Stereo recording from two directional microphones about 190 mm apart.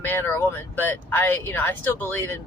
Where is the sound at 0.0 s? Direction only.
10° left (ahead or behind).